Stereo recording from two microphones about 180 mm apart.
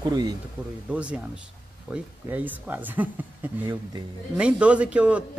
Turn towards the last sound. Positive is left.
turn(degrees=-5)  # may be behind; listen again after turning